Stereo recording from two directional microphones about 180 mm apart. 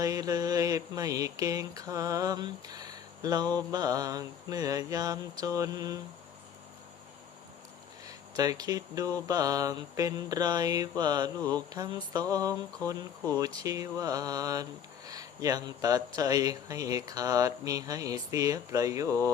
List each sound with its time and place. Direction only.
0.0 s mantra: 20° right (ahead or behind)
8.0 s speech: 20° right (ahead or behind)
9.2 s mantra: 20° right (ahead or behind)
13.6 s mantra: 20° right (ahead or behind)